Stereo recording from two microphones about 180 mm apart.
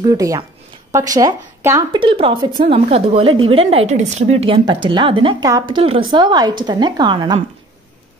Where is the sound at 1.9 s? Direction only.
30° right (ahead or behind).